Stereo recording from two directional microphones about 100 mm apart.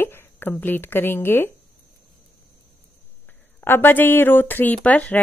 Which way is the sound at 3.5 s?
20° left (ahead or behind).